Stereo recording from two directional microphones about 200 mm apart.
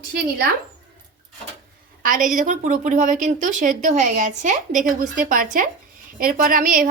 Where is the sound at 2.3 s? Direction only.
40° right (ahead or behind).